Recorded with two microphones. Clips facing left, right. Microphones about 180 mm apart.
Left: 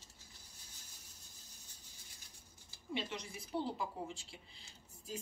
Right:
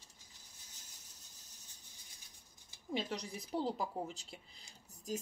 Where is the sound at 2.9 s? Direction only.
40° right (ahead or behind).